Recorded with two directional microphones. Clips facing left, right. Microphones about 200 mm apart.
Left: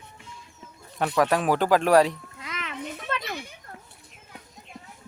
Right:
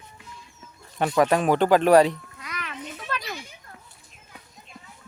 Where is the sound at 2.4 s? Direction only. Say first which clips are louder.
Left 2 dB; 25° left (ahead or behind).